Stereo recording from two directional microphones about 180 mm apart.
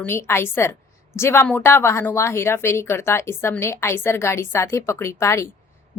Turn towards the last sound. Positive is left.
turn(degrees=15)  # may be behind; listen again after turning